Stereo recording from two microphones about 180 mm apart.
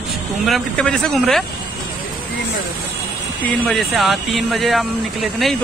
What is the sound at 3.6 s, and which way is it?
Speech, centre (ahead or behind).